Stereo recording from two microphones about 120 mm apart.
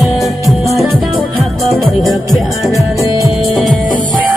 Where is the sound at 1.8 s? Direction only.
Centre (ahead or behind).